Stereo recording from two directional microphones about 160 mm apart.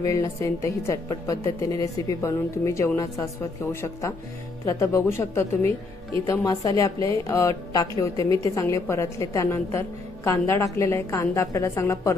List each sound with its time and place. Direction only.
0.0 s a woman's voice: 20° left (ahead or behind)
4.6 s a woman's voice: 15° left (ahead or behind)